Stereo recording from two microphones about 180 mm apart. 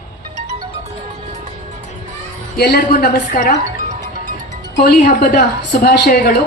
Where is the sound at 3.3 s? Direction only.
45° left (ahead or behind).